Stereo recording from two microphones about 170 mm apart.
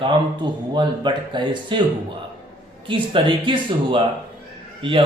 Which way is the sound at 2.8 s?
30° right (ahead or behind).